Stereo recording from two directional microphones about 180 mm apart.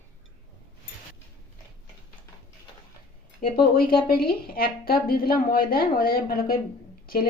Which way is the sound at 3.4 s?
55° left (ahead or behind).